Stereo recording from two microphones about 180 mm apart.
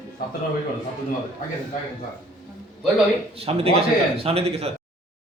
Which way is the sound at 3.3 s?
35° right (ahead or behind).